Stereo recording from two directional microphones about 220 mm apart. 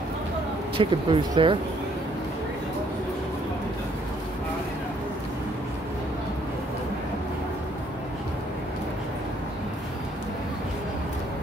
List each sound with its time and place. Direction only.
0.7 s speech: 25° right (ahead or behind)